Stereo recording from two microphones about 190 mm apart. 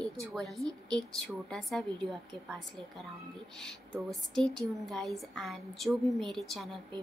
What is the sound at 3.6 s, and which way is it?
A woman's voice, centre (ahead or behind).